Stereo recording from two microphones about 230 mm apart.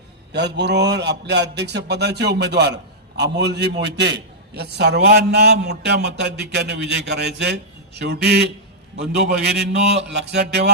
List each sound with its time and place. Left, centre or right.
0.3 s a man's voice: right